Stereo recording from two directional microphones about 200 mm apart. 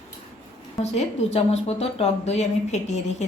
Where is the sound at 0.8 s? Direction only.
35° left (ahead or behind).